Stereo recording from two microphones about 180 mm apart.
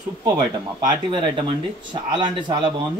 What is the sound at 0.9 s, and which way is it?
Speech, 25° right (ahead or behind).